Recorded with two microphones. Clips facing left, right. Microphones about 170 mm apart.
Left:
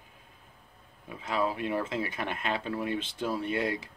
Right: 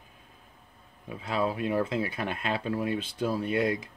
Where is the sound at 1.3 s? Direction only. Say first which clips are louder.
Right 1 dB; 25° right (ahead or behind).